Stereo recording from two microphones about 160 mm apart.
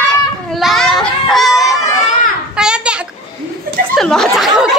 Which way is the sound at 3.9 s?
5° left (ahead or behind).